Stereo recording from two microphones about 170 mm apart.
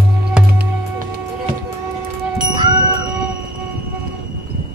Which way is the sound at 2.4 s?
25° right (ahead or behind).